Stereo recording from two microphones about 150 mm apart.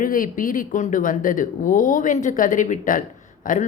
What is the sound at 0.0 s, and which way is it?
Speech, 65° left (ahead or behind).